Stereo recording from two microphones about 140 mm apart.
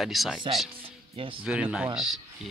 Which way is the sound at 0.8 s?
40° right (ahead or behind).